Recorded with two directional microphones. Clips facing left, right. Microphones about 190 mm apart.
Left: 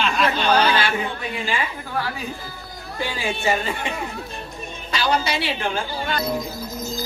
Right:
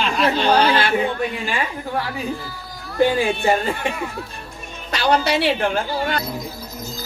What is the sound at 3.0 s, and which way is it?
Speech, 55° right (ahead or behind).